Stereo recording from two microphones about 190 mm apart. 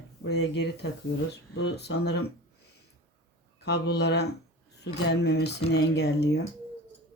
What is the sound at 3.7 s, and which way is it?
Speech, 60° left (ahead or behind).